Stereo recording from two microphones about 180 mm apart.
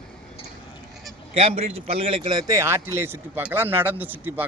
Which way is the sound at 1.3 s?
30° right (ahead or behind).